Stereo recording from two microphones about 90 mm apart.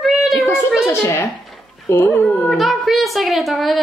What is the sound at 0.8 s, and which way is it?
A woman's voice, 30° left (ahead or behind).